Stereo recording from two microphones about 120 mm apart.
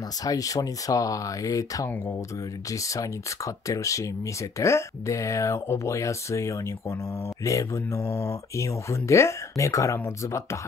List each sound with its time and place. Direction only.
0.2 s speech: 30° left (ahead or behind)